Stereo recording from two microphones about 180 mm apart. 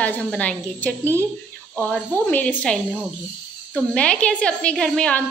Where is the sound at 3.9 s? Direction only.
5° left (ahead or behind).